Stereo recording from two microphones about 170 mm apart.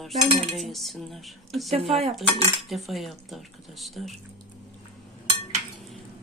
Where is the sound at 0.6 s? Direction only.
Centre (ahead or behind).